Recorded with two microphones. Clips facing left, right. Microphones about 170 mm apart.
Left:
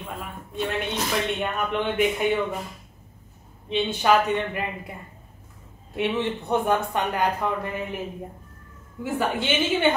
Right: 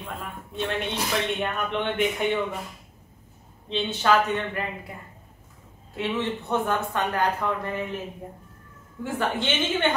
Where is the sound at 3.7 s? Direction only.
15° left (ahead or behind).